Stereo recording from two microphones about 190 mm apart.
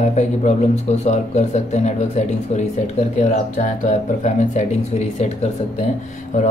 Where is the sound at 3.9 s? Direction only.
40° left (ahead or behind).